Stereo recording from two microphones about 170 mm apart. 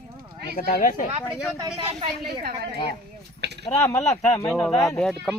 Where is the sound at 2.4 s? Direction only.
70° right (ahead or behind).